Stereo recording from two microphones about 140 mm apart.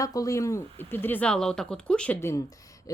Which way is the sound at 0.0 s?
25° left (ahead or behind).